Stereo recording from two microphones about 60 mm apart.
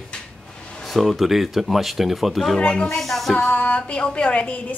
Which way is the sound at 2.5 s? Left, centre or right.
Centre.